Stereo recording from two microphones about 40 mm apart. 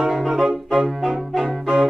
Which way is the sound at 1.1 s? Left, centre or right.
Centre.